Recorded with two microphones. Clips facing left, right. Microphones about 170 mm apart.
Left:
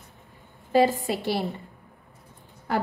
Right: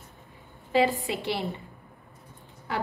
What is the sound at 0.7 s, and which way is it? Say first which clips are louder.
Speech: left 3 dB; 45° left (ahead or behind).